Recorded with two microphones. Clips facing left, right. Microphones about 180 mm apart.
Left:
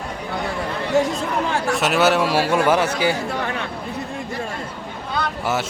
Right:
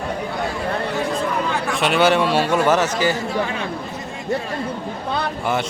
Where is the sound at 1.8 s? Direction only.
5° left (ahead or behind).